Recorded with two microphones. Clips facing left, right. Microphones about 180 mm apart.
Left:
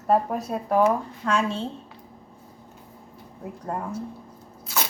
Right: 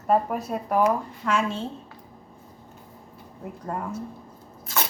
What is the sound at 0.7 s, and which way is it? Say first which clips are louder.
Speech: left 2 dB; 30° left (ahead or behind).